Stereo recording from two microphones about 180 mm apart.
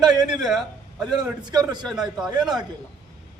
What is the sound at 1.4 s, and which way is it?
Speech, 20° right (ahead or behind).